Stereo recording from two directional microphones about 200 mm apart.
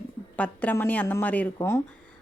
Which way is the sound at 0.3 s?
5° left (ahead or behind).